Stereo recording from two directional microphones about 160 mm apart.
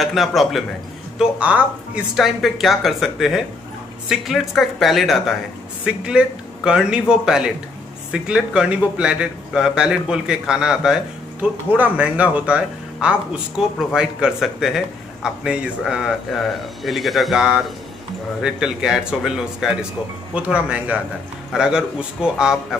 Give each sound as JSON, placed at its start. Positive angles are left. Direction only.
{"t": 0.0, "sound": "speech", "side_deg": 0}